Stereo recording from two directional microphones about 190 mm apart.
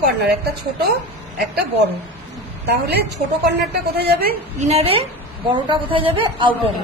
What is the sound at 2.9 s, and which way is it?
A woman's voice, 60° right (ahead or behind).